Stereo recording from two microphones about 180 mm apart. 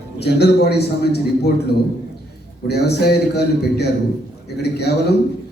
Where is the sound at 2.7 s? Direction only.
65° left (ahead or behind).